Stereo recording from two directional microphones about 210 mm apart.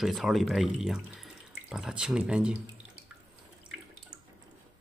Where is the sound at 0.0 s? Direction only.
Centre (ahead or behind).